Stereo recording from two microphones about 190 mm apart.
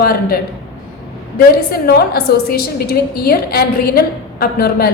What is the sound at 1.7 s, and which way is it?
A woman's voice, 55° left (ahead or behind).